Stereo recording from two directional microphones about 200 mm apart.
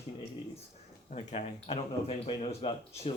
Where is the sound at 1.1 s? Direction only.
35° left (ahead or behind).